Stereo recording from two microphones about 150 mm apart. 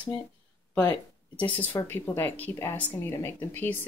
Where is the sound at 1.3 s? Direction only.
10° left (ahead or behind).